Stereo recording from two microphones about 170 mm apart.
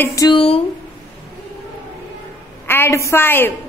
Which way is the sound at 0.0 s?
20° left (ahead or behind).